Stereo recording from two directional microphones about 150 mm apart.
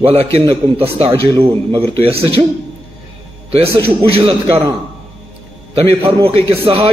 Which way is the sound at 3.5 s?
40° right (ahead or behind).